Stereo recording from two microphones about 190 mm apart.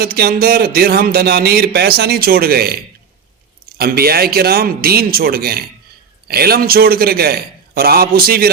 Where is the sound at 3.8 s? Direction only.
55° right (ahead or behind).